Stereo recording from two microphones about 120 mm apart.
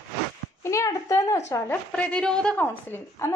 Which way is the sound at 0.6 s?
25° left (ahead or behind).